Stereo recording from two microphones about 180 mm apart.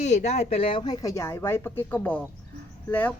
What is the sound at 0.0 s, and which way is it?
Speech, 40° left (ahead or behind).